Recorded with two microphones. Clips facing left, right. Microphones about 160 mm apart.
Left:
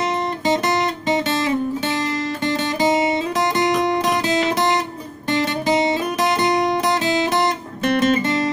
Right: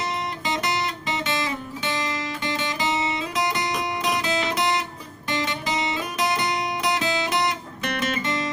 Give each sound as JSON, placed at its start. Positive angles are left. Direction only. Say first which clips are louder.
{"t": 2.4, "sound": "guitar", "louder": "left 8 dB", "side_deg": 40}
{"t": 5.3, "sound": "guitar", "louder": "left 8 dB", "side_deg": 55}
{"t": 7.2, "sound": "guitar", "louder": "left 5 dB", "side_deg": 50}
{"t": 7.8, "sound": "music", "louder": "left 10 dB", "side_deg": 35}